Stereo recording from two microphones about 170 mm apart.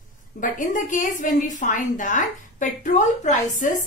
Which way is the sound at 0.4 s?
50° left (ahead or behind).